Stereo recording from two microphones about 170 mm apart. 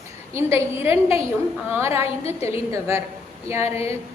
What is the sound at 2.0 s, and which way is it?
Speech, 35° left (ahead or behind).